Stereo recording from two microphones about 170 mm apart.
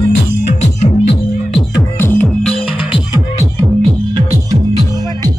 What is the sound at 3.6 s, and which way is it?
Music, 30° right (ahead or behind).